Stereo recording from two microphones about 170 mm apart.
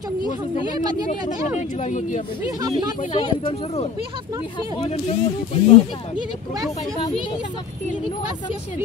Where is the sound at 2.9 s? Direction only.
45° left (ahead or behind).